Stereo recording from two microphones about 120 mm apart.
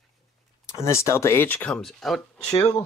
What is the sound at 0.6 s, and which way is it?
Speech, 25° left (ahead or behind).